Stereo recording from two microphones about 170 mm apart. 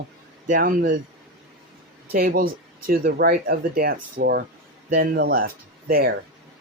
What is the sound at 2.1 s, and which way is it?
Speech, 60° right (ahead or behind).